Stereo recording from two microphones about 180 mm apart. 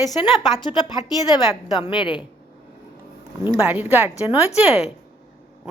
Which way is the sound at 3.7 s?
10° right (ahead or behind).